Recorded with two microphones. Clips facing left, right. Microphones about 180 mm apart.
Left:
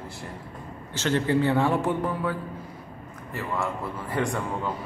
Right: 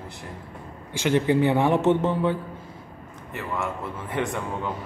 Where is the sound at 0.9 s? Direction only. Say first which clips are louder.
Right 3 dB; 15° right (ahead or behind).